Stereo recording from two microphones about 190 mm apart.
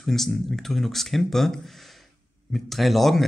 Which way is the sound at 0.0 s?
Centre (ahead or behind).